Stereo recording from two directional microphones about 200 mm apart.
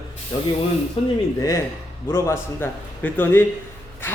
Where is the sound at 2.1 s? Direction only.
10° left (ahead or behind).